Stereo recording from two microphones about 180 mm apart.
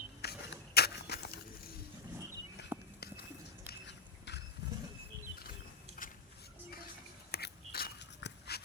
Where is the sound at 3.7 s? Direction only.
70° left (ahead or behind).